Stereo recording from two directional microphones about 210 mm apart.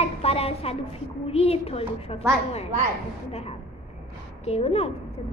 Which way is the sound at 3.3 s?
30° left (ahead or behind).